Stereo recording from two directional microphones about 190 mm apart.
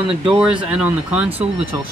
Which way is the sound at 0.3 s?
5° right (ahead or behind).